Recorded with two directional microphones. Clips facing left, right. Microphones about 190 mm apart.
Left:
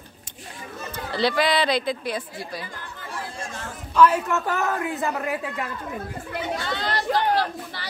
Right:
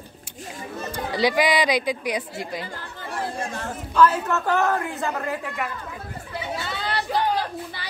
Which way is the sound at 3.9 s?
15° left (ahead or behind).